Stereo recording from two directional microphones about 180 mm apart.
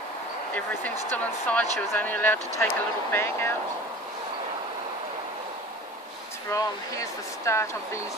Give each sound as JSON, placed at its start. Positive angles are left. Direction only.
{"t": 1.1, "sound": "speech", "side_deg": 10}
{"t": 6.5, "sound": "speech", "side_deg": 15}